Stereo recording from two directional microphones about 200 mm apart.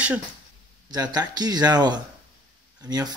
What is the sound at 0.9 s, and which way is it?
A man's voice, 20° right (ahead or behind).